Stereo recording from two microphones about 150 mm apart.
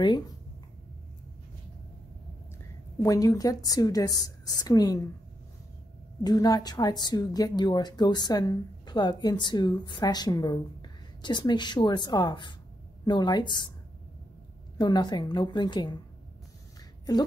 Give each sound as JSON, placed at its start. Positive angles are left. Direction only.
{"t": 3.0, "sound": "a woman's voice", "side_deg": 20}
{"t": 6.2, "sound": "a woman's voice", "side_deg": 25}
{"t": 14.8, "sound": "a woman's voice", "side_deg": 30}